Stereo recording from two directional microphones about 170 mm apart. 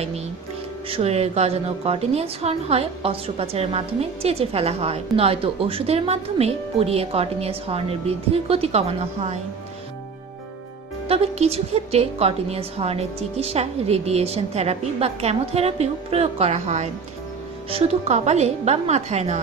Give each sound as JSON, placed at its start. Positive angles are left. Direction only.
{"t": 0.8, "sound": "a woman's voice", "side_deg": -35}
{"t": 11.1, "sound": "a woman's voice", "side_deg": -35}